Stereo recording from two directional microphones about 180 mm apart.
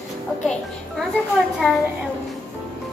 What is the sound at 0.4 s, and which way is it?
Speech, 5° left (ahead or behind).